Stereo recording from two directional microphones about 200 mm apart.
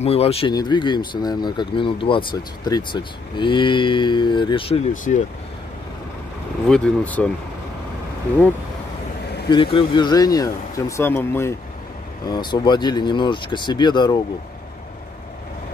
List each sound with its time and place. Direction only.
0.0 s speech: 30° left (ahead or behind)
6.7 s speech: 5° left (ahead or behind)
9.5 s speech: 25° left (ahead or behind)